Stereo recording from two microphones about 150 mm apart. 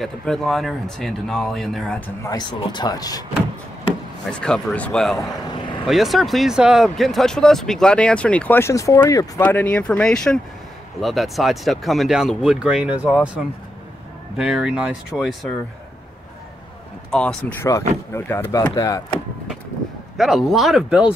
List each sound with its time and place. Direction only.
0.0 s speech: 5° left (ahead or behind)
2.2 s speech: 30° left (ahead or behind)
4.3 s speech: 5° left (ahead or behind)
14.3 s speech: 5° right (ahead or behind)
17.1 s speech: 5° left (ahead or behind); by 19.0 s 20° left (ahead or behind)
20.2 s speech: centre (ahead or behind)